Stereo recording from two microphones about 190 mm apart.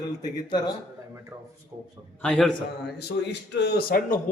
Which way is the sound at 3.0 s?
60° left (ahead or behind).